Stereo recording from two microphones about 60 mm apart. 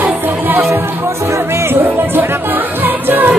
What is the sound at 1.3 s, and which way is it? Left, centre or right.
Music, right.